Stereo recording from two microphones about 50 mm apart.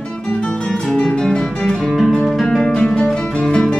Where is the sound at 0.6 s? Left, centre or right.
Centre.